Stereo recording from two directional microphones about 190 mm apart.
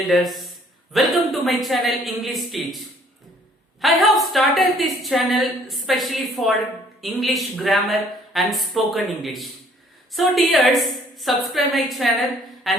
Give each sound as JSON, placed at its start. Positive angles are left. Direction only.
{"t": 0.1, "sound": "a woman's voice", "side_deg": 0}
{"t": 3.8, "sound": "a woman's voice", "side_deg": 0}
{"t": 12.7, "sound": "a sound", "side_deg": 0}